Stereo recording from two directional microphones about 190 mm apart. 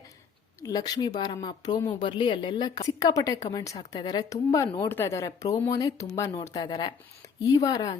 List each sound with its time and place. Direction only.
0.6 s speech: 20° left (ahead or behind)